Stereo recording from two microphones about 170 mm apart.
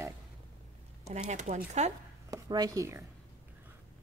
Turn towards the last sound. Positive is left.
turn(degrees=-20)  # may be behind; listen again after turning